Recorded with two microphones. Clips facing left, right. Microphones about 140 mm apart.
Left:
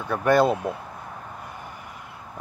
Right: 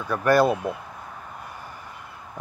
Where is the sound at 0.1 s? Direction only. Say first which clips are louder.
Even; 20° left (ahead or behind).